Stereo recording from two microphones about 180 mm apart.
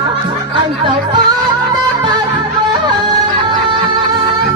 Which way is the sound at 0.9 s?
25° right (ahead or behind).